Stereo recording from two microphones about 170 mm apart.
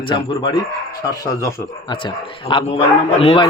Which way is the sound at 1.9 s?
30° left (ahead or behind).